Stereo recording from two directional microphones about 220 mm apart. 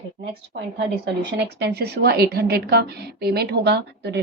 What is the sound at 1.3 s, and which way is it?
A woman's voice, 50° right (ahead or behind).